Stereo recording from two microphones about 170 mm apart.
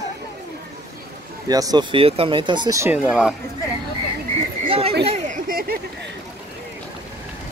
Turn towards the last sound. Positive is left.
turn(degrees=-55)  # may be behind; listen again after turning